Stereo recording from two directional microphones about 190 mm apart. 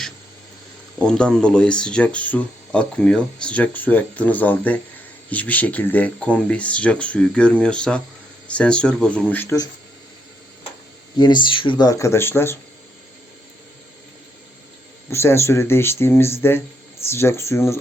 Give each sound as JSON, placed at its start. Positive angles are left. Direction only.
{"t": 0.9, "sound": "speech", "side_deg": 5}
{"t": 11.2, "sound": "speech", "side_deg": 25}
{"t": 15.1, "sound": "speech", "side_deg": 15}